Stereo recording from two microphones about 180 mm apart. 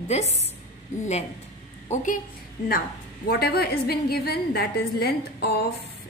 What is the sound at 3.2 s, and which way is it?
A woman's voice, 60° left (ahead or behind).